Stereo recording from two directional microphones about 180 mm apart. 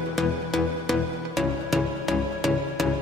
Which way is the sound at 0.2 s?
Centre (ahead or behind).